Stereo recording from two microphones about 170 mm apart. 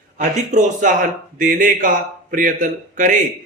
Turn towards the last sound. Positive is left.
turn(degrees=-50)  # may be behind; listen again after turning